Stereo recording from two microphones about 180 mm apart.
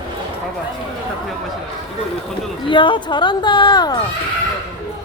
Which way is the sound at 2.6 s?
25° left (ahead or behind).